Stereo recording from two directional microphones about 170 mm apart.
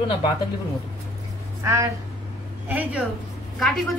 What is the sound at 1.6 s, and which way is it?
Speech, 20° right (ahead or behind).